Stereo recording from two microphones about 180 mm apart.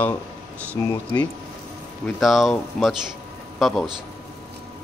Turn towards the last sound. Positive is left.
turn(degrees=0)  # may be behind; listen again after turning